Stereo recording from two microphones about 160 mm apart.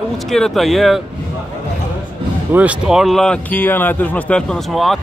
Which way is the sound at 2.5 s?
10° right (ahead or behind).